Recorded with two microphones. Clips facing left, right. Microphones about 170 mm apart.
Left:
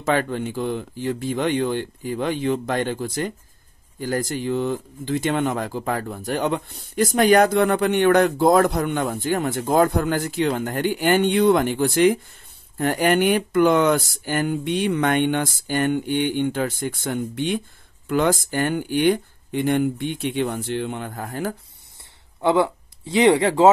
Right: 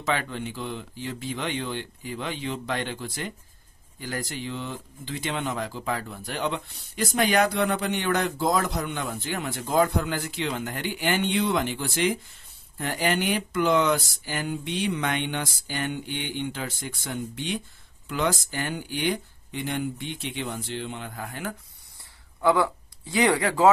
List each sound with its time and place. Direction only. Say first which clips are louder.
0.0 s speech: left 7 dB; 45° left (ahead or behind)
22.4 s speech: left 3 dB; 25° left (ahead or behind)